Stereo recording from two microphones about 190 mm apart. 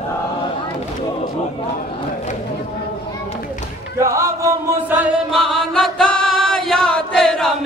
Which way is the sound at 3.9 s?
15° right (ahead or behind).